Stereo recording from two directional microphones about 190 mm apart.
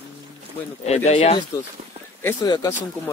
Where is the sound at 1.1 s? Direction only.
35° left (ahead or behind).